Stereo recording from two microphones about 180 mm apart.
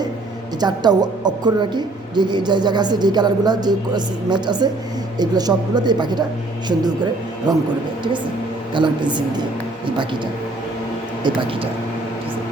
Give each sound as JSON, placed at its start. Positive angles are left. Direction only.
{"t": 0.6, "sound": "a woman's voice", "side_deg": -25}
{"t": 7.5, "sound": "a woman's voice", "side_deg": -25}
{"t": 8.7, "sound": "a woman's voice", "side_deg": -25}